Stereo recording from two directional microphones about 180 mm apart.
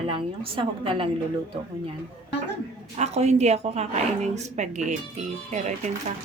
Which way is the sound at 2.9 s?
35° right (ahead or behind).